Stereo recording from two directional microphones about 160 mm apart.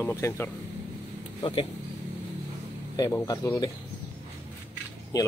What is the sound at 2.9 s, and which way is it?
Speech, 20° left (ahead or behind).